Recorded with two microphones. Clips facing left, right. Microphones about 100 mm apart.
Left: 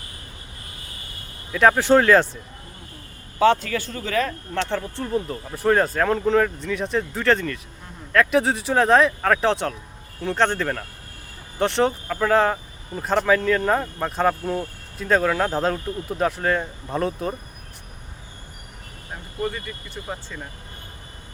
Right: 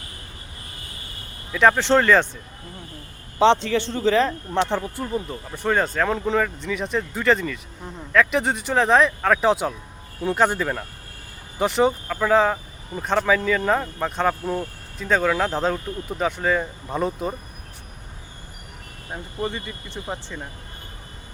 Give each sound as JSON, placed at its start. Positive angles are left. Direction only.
{"t": 1.5, "sound": "speech", "side_deg": 5}
{"t": 3.3, "sound": "speech", "side_deg": -25}
{"t": 4.9, "sound": "a man's voice", "side_deg": 0}
{"t": 19.1, "sound": "speech", "side_deg": -20}